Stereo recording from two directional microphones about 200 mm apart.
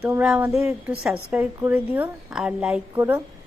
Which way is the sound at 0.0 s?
10° right (ahead or behind).